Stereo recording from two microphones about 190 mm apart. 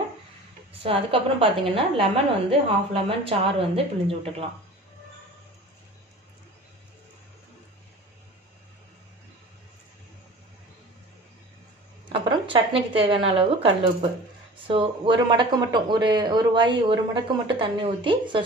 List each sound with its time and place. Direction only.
0.8 s a woman's voice: 30° right (ahead or behind)
12.1 s a woman's voice: 25° right (ahead or behind)